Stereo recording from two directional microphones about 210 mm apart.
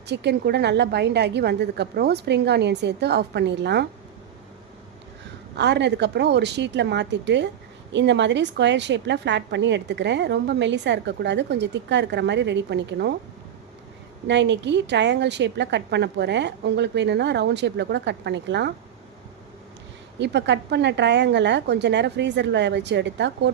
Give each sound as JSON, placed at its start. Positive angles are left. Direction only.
{"t": 0.1, "sound": "a woman's voice", "side_deg": -55}
{"t": 5.5, "sound": "a woman's voice", "side_deg": -55}
{"t": 14.3, "sound": "a woman's voice", "side_deg": -55}
{"t": 20.1, "sound": "a woman's voice", "side_deg": -55}